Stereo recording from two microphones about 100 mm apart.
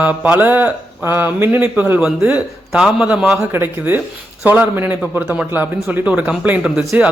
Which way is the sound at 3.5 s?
20° right (ahead or behind).